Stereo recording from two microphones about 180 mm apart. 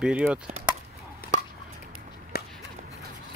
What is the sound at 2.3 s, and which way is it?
Walk, 60° left (ahead or behind).